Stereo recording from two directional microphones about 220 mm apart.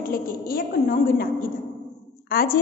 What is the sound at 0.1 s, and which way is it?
A woman's voice, 40° left (ahead or behind).